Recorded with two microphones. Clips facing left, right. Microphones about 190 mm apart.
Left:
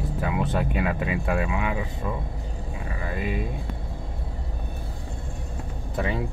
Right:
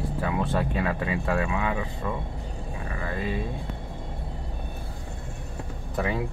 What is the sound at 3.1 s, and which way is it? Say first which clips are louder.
Speech: left 1 dB; 15° left (ahead or behind).